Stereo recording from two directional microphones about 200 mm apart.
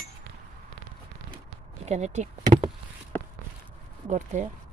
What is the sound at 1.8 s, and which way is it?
Speech, 35° right (ahead or behind).